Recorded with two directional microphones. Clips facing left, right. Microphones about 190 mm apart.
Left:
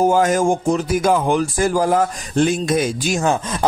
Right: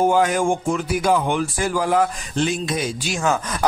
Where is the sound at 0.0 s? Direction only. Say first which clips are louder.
Left 2 dB; 40° left (ahead or behind).